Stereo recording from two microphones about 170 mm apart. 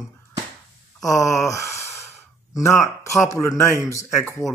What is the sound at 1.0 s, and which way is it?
Speech, 20° left (ahead or behind).